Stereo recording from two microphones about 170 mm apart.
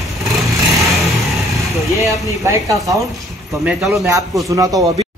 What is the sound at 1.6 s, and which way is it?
A man's voice, 20° right (ahead or behind).